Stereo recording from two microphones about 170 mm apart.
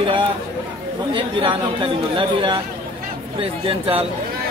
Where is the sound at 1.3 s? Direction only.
30° right (ahead or behind).